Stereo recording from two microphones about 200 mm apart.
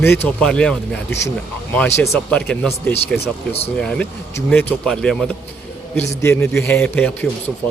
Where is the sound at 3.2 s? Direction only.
30° left (ahead or behind).